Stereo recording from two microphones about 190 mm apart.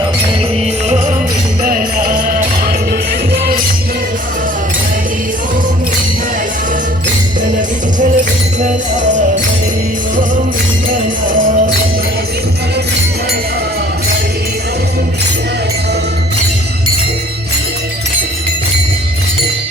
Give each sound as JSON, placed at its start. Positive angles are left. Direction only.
{"t": 0.9, "sound": "music", "side_deg": -40}
{"t": 7.9, "sound": "music", "side_deg": -40}